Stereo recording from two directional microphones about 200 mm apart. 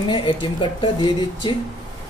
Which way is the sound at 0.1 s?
25° left (ahead or behind).